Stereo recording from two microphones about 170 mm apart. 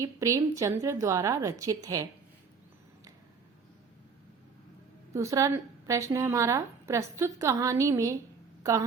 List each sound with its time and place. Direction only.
0.0 s a woman's voice: 20° right (ahead or behind)
5.1 s a woman's voice: 20° right (ahead or behind)